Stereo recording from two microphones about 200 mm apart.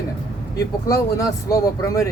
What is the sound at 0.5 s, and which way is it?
Speech, 15° left (ahead or behind).